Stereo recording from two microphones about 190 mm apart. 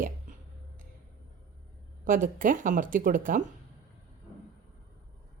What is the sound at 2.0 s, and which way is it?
A woman's voice, 45° right (ahead or behind).